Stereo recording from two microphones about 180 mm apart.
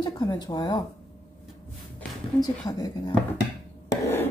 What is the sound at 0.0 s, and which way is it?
Speech, 25° left (ahead or behind).